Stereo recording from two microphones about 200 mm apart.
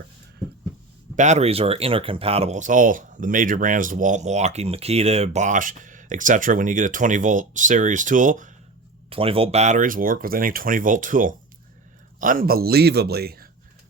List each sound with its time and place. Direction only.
1.1 s speech: 35° right (ahead or behind)
9.0 s a man's voice: 30° right (ahead or behind); by 13.5 s 50° right (ahead or behind)